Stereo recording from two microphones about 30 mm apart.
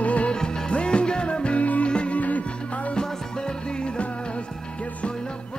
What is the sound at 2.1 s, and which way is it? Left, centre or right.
Music, left.